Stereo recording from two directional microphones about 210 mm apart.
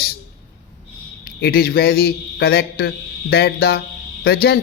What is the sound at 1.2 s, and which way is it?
A man's voice, 45° left (ahead or behind).